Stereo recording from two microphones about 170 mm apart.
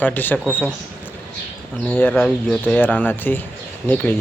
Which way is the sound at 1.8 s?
10° left (ahead or behind).